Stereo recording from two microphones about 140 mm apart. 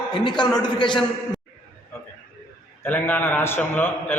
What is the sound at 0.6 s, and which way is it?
Speech, 35° left (ahead or behind).